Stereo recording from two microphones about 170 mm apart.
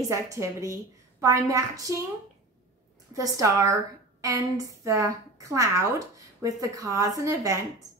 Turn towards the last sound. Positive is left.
turn(degrees=-20)  # may be behind; listen again after turning